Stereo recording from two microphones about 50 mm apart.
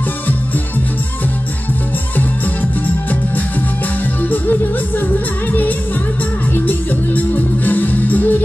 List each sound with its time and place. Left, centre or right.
4.0 s music: left